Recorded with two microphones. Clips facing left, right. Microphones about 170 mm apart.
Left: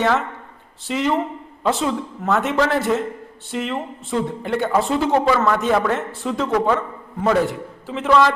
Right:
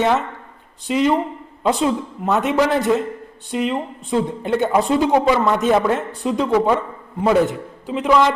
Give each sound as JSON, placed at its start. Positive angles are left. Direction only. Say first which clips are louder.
{"t": 0.0, "sound": "a woman's voice", "louder": "right 1 dB", "side_deg": -20}